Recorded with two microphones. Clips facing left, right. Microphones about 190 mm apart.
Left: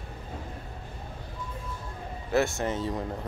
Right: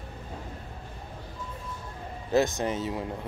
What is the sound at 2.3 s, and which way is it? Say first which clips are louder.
Speech: right 1 dB; 15° right (ahead or behind).